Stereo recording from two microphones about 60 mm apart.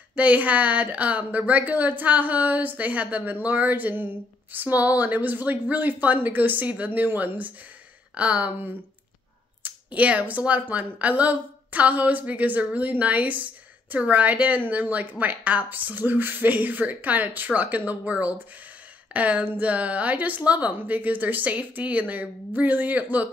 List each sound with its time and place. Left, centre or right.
0.1 s speech: right
19.4 s a sound: right
19.7 s speech: right